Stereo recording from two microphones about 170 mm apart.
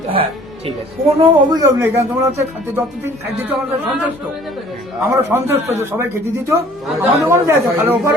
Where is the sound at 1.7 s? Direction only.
15° right (ahead or behind).